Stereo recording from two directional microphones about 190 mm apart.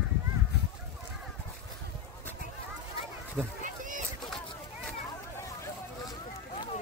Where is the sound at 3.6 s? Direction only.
45° right (ahead or behind).